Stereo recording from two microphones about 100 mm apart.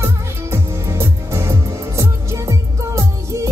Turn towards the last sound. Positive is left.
turn(degrees=-30)  # may be behind; listen again after turning